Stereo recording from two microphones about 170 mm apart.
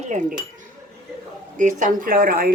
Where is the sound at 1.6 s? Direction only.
50° right (ahead or behind).